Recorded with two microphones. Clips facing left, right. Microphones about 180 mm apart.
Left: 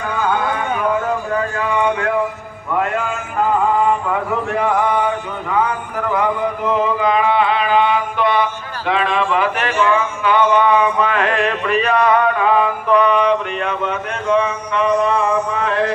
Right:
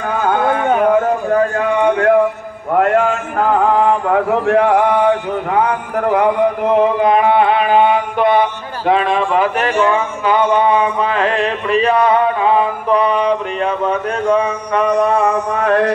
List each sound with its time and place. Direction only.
0.2 s a sound: 50° right (ahead or behind)
2.7 s a man's voice: 55° right (ahead or behind); by 15.2 s 40° right (ahead or behind)
15.5 s mantra: 55° right (ahead or behind)